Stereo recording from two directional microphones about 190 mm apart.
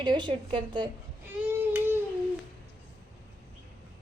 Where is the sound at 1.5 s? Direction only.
10° right (ahead or behind).